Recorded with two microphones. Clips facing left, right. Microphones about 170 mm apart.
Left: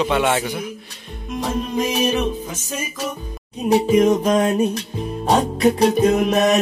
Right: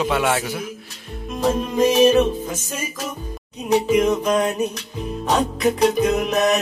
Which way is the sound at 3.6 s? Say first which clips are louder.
Left 2 dB; 35° left (ahead or behind).